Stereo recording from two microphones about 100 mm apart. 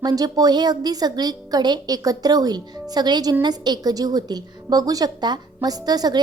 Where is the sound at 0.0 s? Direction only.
40° right (ahead or behind).